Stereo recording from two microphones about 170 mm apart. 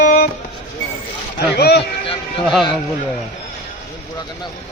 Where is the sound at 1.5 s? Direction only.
70° left (ahead or behind).